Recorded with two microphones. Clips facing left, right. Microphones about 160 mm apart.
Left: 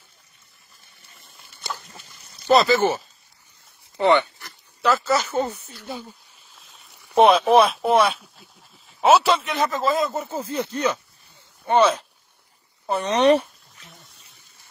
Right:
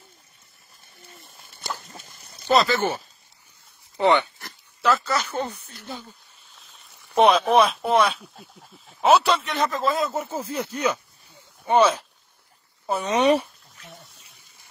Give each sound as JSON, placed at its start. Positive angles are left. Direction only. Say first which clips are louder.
{"t": 1.4, "sound": "dog", "louder": "even", "side_deg": -50}
{"t": 2.4, "sound": "speech", "louder": "left 3 dB", "side_deg": 0}
{"t": 4.0, "sound": "speech", "louder": "left 1 dB", "side_deg": -15}
{"t": 4.8, "sound": "speech", "louder": "left 2 dB", "side_deg": 0}
{"t": 6.5, "sound": "boat", "louder": "left 1 dB", "side_deg": 0}
{"t": 7.2, "sound": "speech", "louder": "left 2 dB", "side_deg": 0}
{"t": 12.8, "sound": "a sound", "louder": "left 2 dB", "side_deg": -5}